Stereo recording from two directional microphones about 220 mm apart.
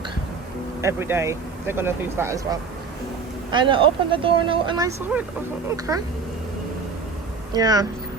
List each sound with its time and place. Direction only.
0.8 s speech: 10° right (ahead or behind)
7.5 s speech: 15° right (ahead or behind)